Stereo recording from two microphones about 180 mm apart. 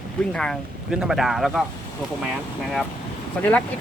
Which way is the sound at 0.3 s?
Centre (ahead or behind).